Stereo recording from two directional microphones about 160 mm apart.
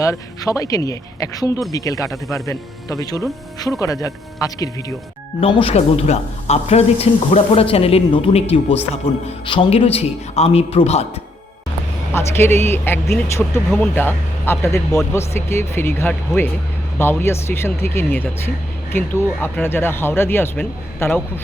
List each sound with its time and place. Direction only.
0.0 s speech: 20° left (ahead or behind)
5.4 s a woman's voice: 35° left (ahead or behind)
12.1 s speech: 15° left (ahead or behind)
13.7 s speech: 5° left (ahead or behind)